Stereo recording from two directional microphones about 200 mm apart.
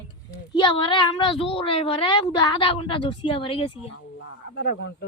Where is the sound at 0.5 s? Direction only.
25° left (ahead or behind).